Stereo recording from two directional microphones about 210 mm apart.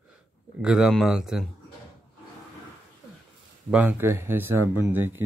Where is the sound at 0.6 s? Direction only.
5° right (ahead or behind).